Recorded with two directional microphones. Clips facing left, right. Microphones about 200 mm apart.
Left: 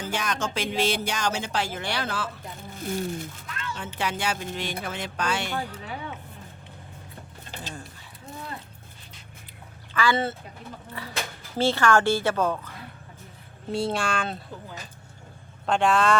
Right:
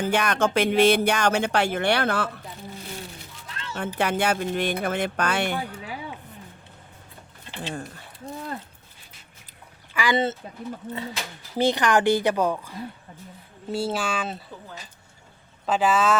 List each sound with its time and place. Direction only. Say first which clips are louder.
0.0 s speech: right 7 dB; 60° right (ahead or behind)
2.8 s a sound: left 9 dB; 45° left (ahead or behind)
3.5 s a sound: left 1 dB; 25° right (ahead or behind)
3.8 s speech: right 7 dB; 55° right (ahead or behind)
9.9 s speech: right 1 dB; 15° right (ahead or behind)
11.5 s a woman's voice: right 1 dB; 15° right (ahead or behind)
15.6 s speech: even; 5° right (ahead or behind)